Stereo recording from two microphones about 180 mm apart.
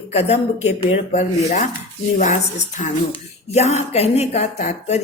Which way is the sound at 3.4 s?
35° left (ahead or behind).